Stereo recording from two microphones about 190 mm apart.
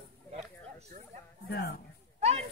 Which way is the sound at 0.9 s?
45° right (ahead or behind).